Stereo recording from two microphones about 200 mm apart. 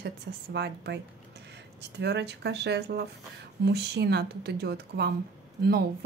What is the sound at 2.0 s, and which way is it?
Speech, 60° right (ahead or behind).